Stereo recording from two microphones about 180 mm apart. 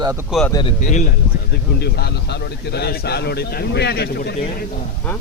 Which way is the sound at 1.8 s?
65° left (ahead or behind).